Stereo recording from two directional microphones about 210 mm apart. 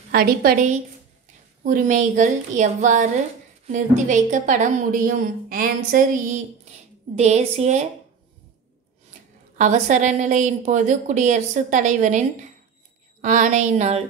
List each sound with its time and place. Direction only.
0.1 s a woman's voice: 45° right (ahead or behind)
9.6 s a woman's voice: 35° right (ahead or behind)